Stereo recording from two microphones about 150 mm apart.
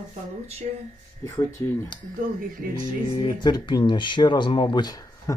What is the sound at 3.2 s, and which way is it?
Speech, 30° left (ahead or behind).